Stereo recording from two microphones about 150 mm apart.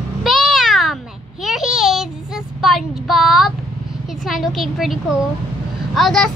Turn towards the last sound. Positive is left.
turn(degrees=0)  # may be behind; listen again after turning